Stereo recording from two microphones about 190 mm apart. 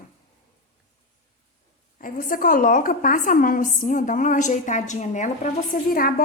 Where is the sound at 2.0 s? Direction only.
50° left (ahead or behind).